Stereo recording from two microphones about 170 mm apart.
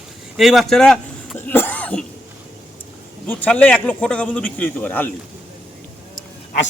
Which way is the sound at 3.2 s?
10° left (ahead or behind).